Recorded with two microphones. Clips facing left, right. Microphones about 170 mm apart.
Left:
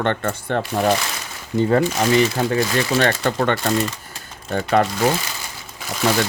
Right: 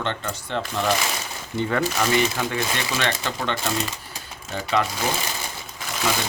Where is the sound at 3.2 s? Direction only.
55° left (ahead or behind).